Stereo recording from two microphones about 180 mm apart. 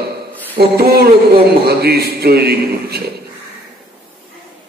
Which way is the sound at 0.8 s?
60° right (ahead or behind).